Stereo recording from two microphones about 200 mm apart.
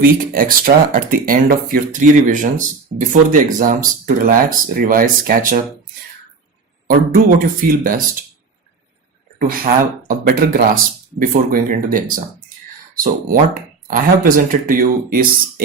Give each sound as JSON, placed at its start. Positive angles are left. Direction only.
{"t": 0.0, "sound": "speech", "side_deg": -45}
{"t": 6.8, "sound": "speech", "side_deg": -45}
{"t": 9.4, "sound": "speech", "side_deg": -45}